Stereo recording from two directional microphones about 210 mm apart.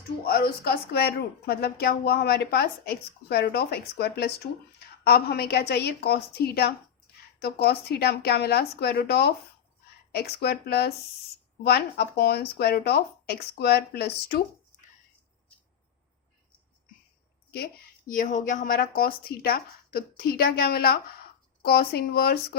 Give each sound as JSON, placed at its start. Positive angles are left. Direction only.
{"t": 0.3, "sound": "a woman's voice", "side_deg": 45}
{"t": 18.1, "sound": "a woman's voice", "side_deg": 40}